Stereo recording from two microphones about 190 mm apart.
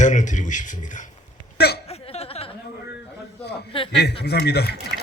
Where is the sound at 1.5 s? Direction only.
60° left (ahead or behind).